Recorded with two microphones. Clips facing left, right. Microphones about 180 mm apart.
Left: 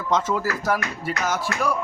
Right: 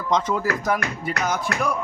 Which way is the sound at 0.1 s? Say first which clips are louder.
Right 1 dB; 5° left (ahead or behind).